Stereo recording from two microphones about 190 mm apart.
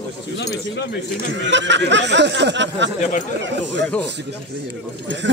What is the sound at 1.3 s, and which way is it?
Speech, 70° right (ahead or behind).